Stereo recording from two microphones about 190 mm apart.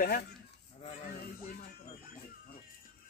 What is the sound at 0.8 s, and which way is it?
Speech, 40° left (ahead or behind).